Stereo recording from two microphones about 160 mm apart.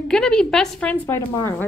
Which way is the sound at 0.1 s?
5° left (ahead or behind).